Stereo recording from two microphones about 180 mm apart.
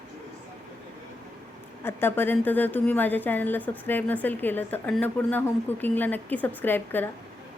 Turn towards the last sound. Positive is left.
turn(degrees=10)  # may be behind; listen again after turning